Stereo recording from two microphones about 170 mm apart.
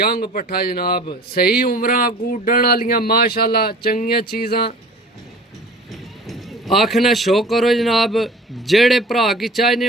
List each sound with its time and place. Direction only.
0.0 s speech: 60° left (ahead or behind)
5.9 s speech: centre (ahead or behind)